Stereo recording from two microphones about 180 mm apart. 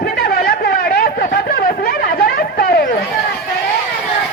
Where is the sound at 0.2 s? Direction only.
55° left (ahead or behind).